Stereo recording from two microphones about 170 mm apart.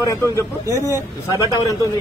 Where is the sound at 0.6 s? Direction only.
20° right (ahead or behind).